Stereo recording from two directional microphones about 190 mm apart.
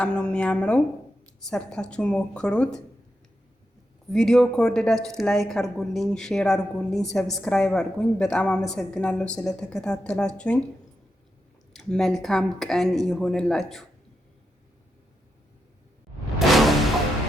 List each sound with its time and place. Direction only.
0.0 s a woman's voice: 5° left (ahead or behind)
4.1 s a woman's voice: centre (ahead or behind)
11.7 s a woman's voice: centre (ahead or behind)
16.5 s music: centre (ahead or behind)